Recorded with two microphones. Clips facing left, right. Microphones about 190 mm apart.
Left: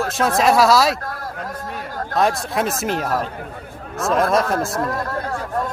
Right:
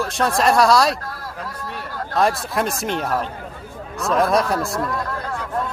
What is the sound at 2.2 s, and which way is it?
Speech, centre (ahead or behind).